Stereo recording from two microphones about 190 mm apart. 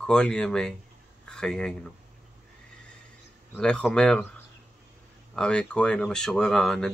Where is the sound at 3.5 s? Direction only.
5° left (ahead or behind).